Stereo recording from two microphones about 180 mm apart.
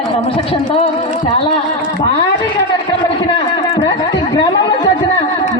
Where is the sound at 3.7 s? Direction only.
25° left (ahead or behind).